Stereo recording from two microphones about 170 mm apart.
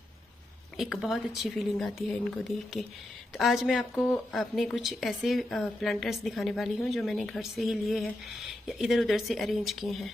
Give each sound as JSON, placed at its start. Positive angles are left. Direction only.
{"t": 0.7, "sound": "a woman's voice", "side_deg": 0}